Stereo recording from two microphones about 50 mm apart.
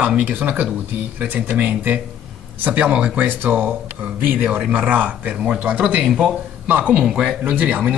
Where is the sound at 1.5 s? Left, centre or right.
Right.